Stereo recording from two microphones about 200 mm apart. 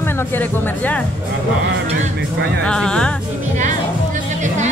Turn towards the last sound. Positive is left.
turn(degrees=5)  # may be behind; listen again after turning